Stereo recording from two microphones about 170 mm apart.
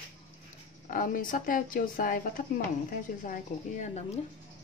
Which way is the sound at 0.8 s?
55° left (ahead or behind).